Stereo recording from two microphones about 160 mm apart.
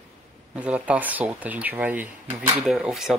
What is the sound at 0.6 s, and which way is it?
Speech, 10° right (ahead or behind).